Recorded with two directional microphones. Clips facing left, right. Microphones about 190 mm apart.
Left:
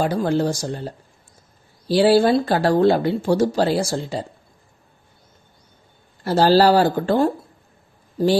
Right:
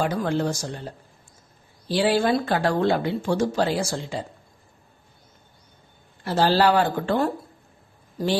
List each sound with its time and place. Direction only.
0.0 s speech: 35° left (ahead or behind)
6.2 s speech: 40° left (ahead or behind)